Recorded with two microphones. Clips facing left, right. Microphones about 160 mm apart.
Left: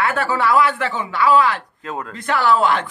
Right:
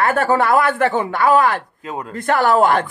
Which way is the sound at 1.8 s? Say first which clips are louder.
Right 1 dB; 15° right (ahead or behind).